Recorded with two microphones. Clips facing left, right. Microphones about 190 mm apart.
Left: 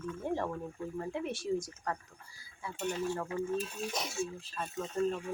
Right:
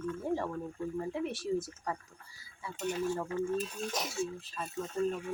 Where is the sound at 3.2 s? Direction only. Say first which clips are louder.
Right 2 dB; 10° left (ahead or behind).